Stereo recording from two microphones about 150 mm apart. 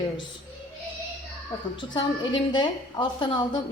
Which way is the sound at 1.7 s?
30° left (ahead or behind).